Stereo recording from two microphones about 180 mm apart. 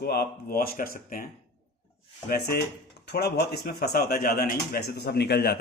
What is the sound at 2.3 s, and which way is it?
A man's voice, 65° left (ahead or behind).